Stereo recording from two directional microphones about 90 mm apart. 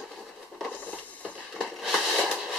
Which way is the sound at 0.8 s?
15° left (ahead or behind).